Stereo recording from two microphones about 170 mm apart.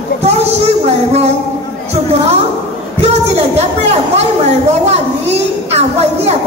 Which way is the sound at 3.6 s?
40° right (ahead or behind).